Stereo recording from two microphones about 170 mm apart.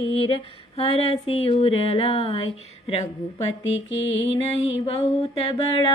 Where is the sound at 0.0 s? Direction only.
35° left (ahead or behind).